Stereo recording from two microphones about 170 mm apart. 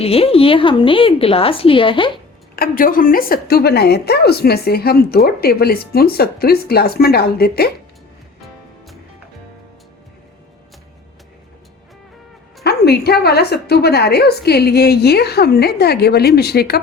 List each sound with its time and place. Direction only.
0.0 s a woman's voice: 35° left (ahead or behind)
2.6 s a woman's voice: 55° left (ahead or behind)
12.6 s a woman's voice: 70° left (ahead or behind)